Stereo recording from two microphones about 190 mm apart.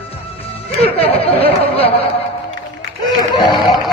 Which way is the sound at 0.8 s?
30° left (ahead or behind).